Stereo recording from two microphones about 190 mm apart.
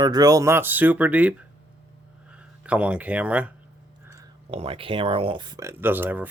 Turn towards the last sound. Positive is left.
turn(degrees=-10)  # may be behind; listen again after turning